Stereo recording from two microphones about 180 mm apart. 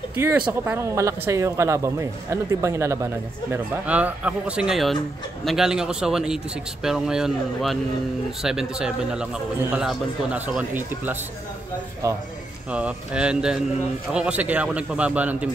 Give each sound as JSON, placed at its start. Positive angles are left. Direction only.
{"t": 0.1, "sound": "a man's voice", "side_deg": -15}
{"t": 12.7, "sound": "a man's voice", "side_deg": -5}